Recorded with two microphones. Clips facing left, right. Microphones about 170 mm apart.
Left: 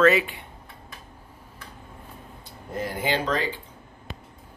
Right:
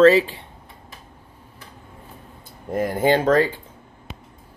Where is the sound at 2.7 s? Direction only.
50° right (ahead or behind).